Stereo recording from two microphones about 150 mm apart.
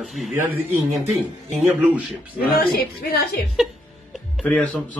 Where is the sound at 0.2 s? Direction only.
Centre (ahead or behind).